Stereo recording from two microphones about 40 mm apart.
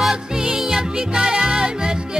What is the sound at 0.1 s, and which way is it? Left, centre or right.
Music, centre.